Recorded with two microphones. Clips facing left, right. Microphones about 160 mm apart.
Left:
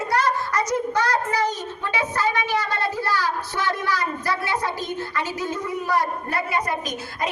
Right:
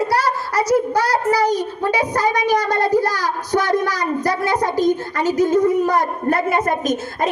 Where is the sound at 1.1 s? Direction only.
35° right (ahead or behind).